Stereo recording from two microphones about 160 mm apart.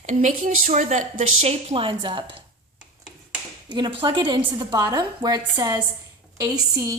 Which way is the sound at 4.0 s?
30° right (ahead or behind).